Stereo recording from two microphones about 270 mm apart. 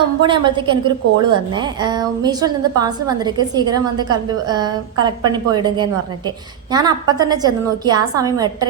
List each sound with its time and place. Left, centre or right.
0.2 s a woman's voice: centre